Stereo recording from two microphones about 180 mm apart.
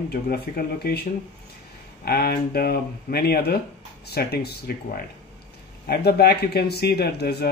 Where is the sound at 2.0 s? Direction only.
60° left (ahead or behind).